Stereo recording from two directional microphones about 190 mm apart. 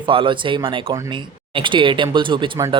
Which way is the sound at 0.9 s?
15° right (ahead or behind).